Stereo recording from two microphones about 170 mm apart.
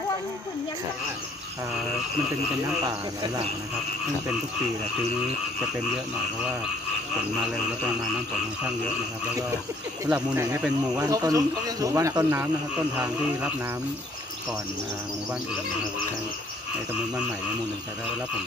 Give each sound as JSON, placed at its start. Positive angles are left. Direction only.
{"t": 10.0, "sound": "speech", "side_deg": -10}
{"t": 11.1, "sound": "speech", "side_deg": -20}